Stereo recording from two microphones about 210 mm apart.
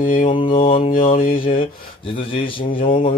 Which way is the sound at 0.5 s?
25° left (ahead or behind).